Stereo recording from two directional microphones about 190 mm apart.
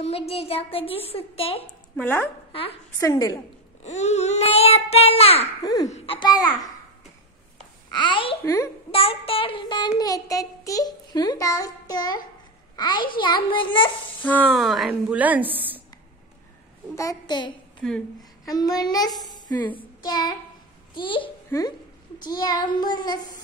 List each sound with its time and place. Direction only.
0.3 s child singing: 30° left (ahead or behind)
2.0 s a woman's voice: 10° left (ahead or behind)
3.8 s a child's voice: 35° left (ahead or behind)
5.6 s child singing: 20° left (ahead or behind)
5.9 s child singing: 30° left (ahead or behind)
7.9 s child singing: 25° left (ahead or behind)
14.2 s a woman's voice: 10° left (ahead or behind); by 15.8 s 10° right (ahead or behind)
16.9 s a woman's voice: 20° left (ahead or behind)
19.5 s a woman's voice: 10° left (ahead or behind)
19.8 s child singing: 20° left (ahead or behind)
21.5 s speech: 20° left (ahead or behind)
22.2 s child singing: 20° left (ahead or behind)